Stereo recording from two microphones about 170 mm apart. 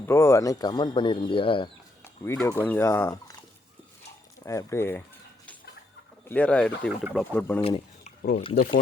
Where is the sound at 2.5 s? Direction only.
15° left (ahead or behind).